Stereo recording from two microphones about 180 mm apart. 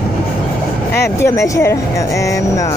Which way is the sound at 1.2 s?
15° left (ahead or behind).